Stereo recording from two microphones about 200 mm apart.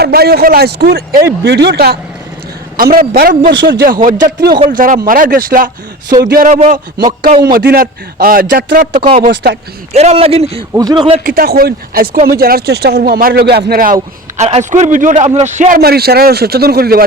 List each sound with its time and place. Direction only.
0.0 s speech: 50° right (ahead or behind)
3.5 s speech: 65° right (ahead or behind)
4.0 s a man's voice: 40° right (ahead or behind)
7.4 s speech: 50° right (ahead or behind)
9.0 s a man's voice: 30° right (ahead or behind)
9.3 s speech: 55° right (ahead or behind)
9.9 s a man's voice: 35° right (ahead or behind)
11.2 s speech: 45° right (ahead or behind)
14.3 s a man's voice: 35° right (ahead or behind); by 17.0 s 50° right (ahead or behind)